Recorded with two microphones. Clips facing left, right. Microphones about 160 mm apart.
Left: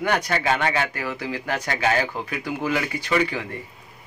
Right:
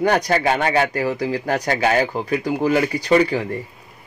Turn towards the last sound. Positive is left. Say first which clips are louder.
# right 7 dB
turn(degrees=-40)  # may be behind; listen again after turning